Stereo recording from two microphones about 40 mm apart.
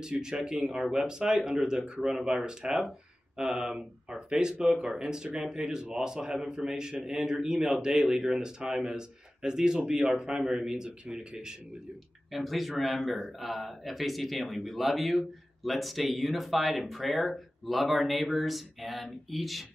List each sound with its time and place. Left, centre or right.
0.2 s a man's voice: centre
12.3 s speech: centre